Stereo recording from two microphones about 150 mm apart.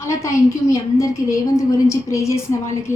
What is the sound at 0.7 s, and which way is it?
A woman's voice, 20° left (ahead or behind).